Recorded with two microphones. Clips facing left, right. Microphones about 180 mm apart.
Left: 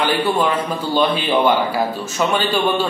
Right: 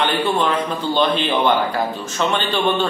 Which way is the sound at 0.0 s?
5° left (ahead or behind).